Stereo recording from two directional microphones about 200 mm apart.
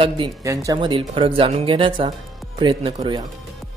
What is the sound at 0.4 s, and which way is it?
Speech, 15° right (ahead or behind).